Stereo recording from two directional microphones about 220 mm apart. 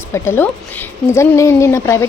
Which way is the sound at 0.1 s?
10° left (ahead or behind).